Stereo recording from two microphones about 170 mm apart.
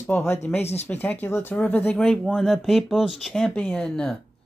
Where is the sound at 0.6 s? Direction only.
40° left (ahead or behind).